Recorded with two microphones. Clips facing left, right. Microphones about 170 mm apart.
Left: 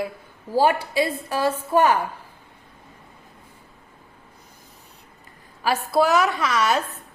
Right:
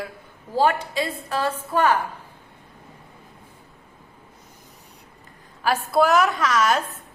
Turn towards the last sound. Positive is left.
turn(degrees=0)  # may be behind; listen again after turning